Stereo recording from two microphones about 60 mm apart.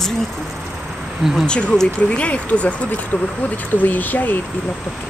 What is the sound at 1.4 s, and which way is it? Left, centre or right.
Speech, centre.